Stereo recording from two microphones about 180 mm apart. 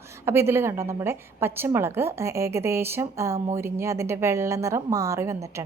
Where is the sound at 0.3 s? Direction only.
15° right (ahead or behind).